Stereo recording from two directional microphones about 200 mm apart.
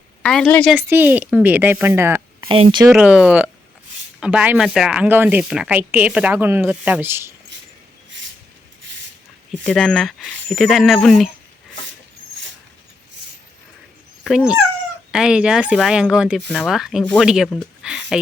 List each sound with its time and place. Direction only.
0.2 s speech: 5° left (ahead or behind)
0.8 s speech: 10° right (ahead or behind)
2.5 s speech: 25° right (ahead or behind)
2.9 s speech: 5° right (ahead or behind)
9.6 s speech: 5° left (ahead or behind)
14.3 s speech: 5° right (ahead or behind)